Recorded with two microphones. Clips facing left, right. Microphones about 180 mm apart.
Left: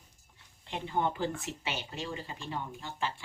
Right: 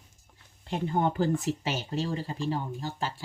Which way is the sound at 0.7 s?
40° right (ahead or behind).